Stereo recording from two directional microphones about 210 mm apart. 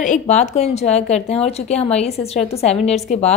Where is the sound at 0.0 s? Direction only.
35° left (ahead or behind).